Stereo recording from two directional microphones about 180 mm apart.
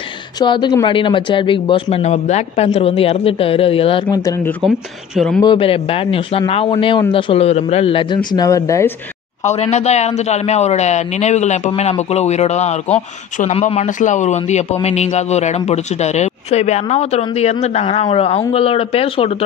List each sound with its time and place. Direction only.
0.4 s speech: 25° left (ahead or behind)
4.6 s speech: centre (ahead or behind)
5.4 s a man's voice: 30° left (ahead or behind)
9.4 s speech: 40° left (ahead or behind)